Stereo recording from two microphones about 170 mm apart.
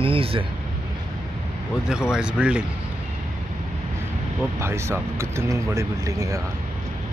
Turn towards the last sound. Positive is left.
turn(degrees=-20)  # may be behind; listen again after turning